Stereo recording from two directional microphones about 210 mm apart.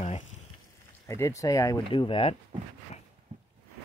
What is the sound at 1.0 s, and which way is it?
Speech, 15° left (ahead or behind).